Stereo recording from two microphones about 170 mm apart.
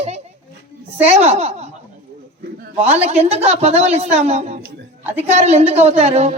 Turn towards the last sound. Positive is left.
turn(degrees=-40)  # may be behind; listen again after turning